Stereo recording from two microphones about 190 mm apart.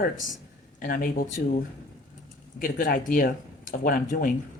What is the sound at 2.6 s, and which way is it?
Speech, 45° left (ahead or behind).